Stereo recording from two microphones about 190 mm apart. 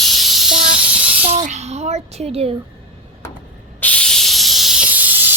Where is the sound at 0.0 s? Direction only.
Centre (ahead or behind).